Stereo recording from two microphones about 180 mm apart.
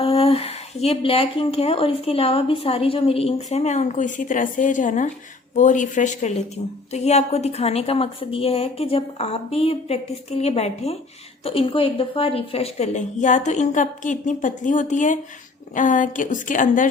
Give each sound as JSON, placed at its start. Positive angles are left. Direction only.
{"t": 0.0, "sound": "a woman's voice", "side_deg": 30}